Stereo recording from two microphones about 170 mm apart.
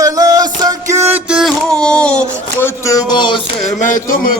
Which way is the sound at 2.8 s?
20° left (ahead or behind).